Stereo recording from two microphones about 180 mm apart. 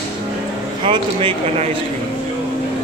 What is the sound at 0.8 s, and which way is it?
Speech, 30° right (ahead or behind).